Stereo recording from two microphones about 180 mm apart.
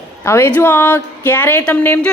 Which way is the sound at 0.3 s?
15° left (ahead or behind).